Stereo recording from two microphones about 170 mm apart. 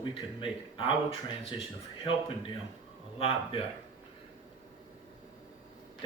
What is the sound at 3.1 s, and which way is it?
Speech, 35° left (ahead or behind).